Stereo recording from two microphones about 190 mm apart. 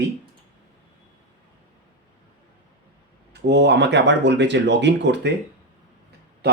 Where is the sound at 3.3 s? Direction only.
65° right (ahead or behind).